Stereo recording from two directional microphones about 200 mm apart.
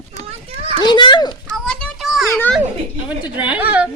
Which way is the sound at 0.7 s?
25° left (ahead or behind).